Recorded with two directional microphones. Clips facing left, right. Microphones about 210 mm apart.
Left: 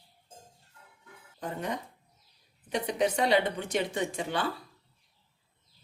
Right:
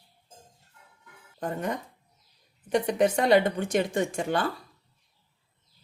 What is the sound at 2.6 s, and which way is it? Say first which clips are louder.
A woman's voice: right 5 dB; 50° right (ahead or behind).